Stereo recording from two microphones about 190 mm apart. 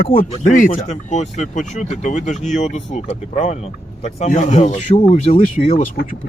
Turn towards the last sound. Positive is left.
turn(degrees=40)  # may be behind; listen again after turning